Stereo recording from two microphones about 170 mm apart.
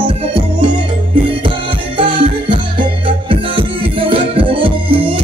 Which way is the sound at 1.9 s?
30° right (ahead or behind).